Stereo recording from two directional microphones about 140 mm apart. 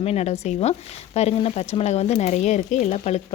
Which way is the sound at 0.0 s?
50° left (ahead or behind).